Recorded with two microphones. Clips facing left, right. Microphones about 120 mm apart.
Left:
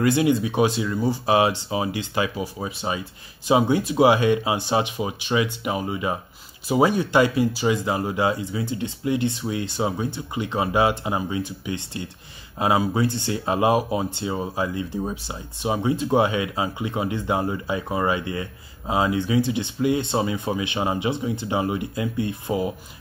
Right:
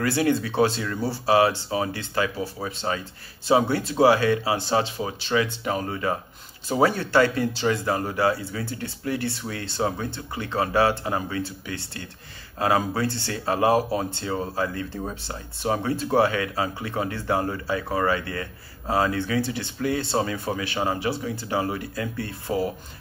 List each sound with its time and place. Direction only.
0.0 s speech: 15° left (ahead or behind)